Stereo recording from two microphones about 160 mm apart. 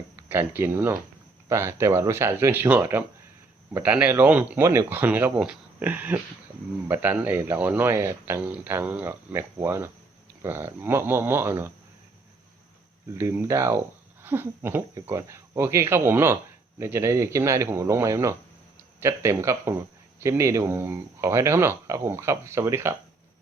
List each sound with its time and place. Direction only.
0.3 s speech: 15° right (ahead or behind)
13.1 s speech: 15° right (ahead or behind)